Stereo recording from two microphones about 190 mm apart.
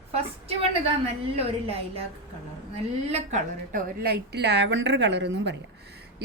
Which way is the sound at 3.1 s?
35° right (ahead or behind).